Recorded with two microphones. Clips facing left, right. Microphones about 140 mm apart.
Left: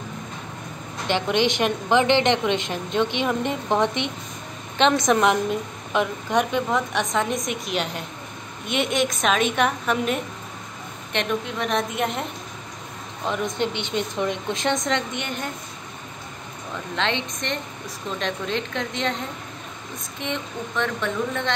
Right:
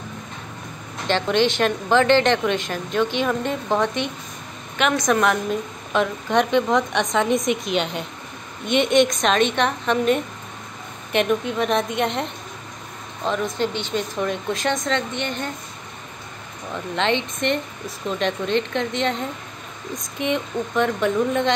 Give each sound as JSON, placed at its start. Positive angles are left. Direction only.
{"t": 1.0, "sound": "a woman's voice", "side_deg": 15}
{"t": 5.9, "sound": "a woman's voice", "side_deg": 10}
{"t": 13.3, "sound": "a woman's voice", "side_deg": 20}
{"t": 16.9, "sound": "a woman's voice", "side_deg": 0}
{"t": 20.0, "sound": "speech", "side_deg": -15}